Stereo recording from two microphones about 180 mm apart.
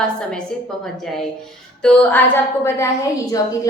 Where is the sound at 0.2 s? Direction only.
5° left (ahead or behind).